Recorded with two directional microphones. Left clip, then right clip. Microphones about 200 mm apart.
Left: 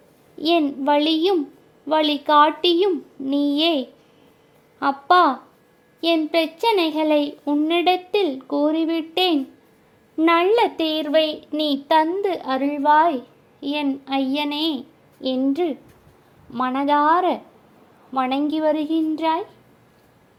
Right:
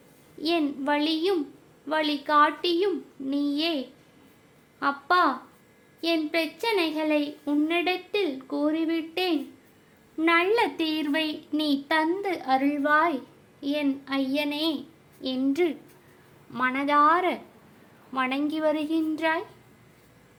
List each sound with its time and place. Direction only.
0.3 s a woman's voice: 30° left (ahead or behind)
16.5 s a woman's voice: 20° left (ahead or behind)